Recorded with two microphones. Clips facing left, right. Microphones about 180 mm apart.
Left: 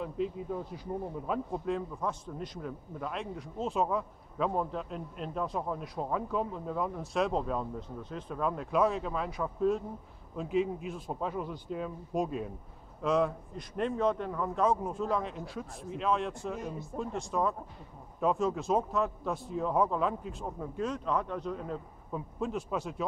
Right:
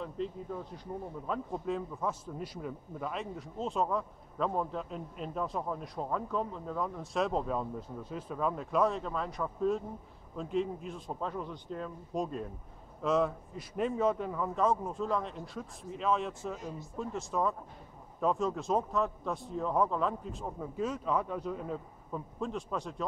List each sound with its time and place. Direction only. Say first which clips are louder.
0.2 s a man's voice: left 4 dB; 5° left (ahead or behind)